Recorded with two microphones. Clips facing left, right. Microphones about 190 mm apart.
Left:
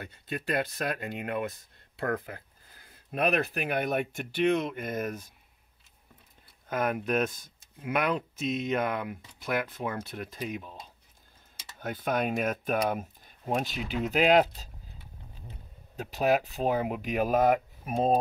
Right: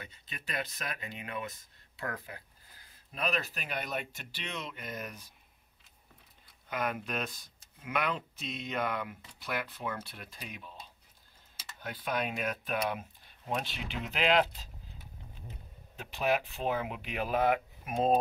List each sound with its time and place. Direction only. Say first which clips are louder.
0.0 s speech: left 11 dB; 55° left (ahead or behind)
3.1 s speech: left 8 dB; 60° left (ahead or behind)
6.7 s speech: left 7 dB; 50° left (ahead or behind)
11.8 s speech: left 5 dB; 50° left (ahead or behind)
16.0 s speech: left 5 dB; 40° left (ahead or behind)